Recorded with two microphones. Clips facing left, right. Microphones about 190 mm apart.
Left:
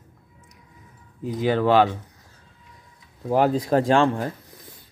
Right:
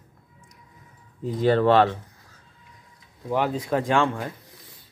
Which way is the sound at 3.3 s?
40° left (ahead or behind).